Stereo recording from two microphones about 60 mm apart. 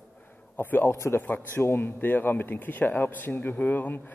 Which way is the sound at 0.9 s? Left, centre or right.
Left.